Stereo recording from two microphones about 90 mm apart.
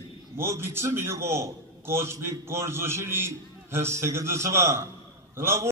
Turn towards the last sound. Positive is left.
turn(degrees=-30)  # may be behind; listen again after turning